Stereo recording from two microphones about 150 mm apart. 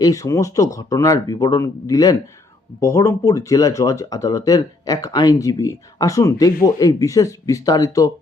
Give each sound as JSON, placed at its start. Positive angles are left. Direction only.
{"t": 0.0, "sound": "speech", "side_deg": 20}